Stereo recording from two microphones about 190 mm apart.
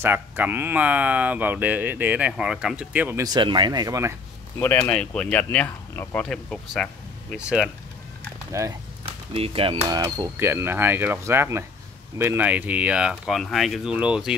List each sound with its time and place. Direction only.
0.0 s speech: 10° right (ahead or behind)
3.3 s speech: 25° right (ahead or behind)
4.6 s speech: 15° left (ahead or behind); by 7.7 s 5° right (ahead or behind)
8.5 s speech: 15° right (ahead or behind)
9.0 s speech: 30° right (ahead or behind); by 14.3 s 5° right (ahead or behind)